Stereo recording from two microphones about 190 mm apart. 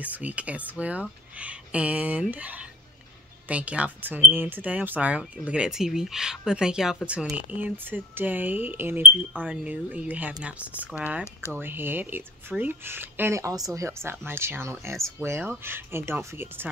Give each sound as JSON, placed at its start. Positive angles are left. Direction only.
{"t": 0.0, "sound": "speech", "side_deg": -10}